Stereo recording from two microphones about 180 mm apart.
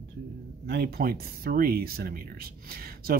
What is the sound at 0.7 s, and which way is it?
Speech, 60° right (ahead or behind).